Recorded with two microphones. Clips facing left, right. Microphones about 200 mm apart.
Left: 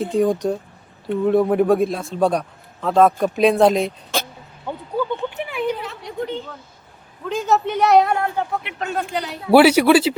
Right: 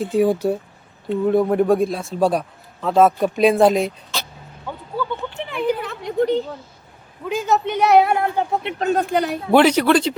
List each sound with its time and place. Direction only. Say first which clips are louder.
0.0 s a man's voice: right 1 dB; 5° right (ahead or behind)
4.6 s a sound: left 3 dB; 15° left (ahead or behind)
5.8 s a sound: right 7 dB; 50° right (ahead or behind)
7.3 s a man's voice: even; centre (ahead or behind)
8.2 s speech: right 2 dB; 20° right (ahead or behind)
8.8 s speech: right 6 dB; 40° right (ahead or behind)
9.0 s speech: right 6 dB; 50° right (ahead or behind)
9.5 s speech: left 3 dB; 10° left (ahead or behind)